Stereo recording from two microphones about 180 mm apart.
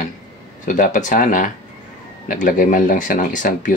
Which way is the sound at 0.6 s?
45° left (ahead or behind).